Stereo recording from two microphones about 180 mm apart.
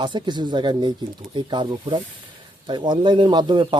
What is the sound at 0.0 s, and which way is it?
Speech, 25° right (ahead or behind).